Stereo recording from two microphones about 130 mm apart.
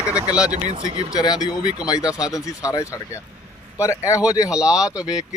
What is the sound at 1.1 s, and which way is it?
Speech, 30° left (ahead or behind).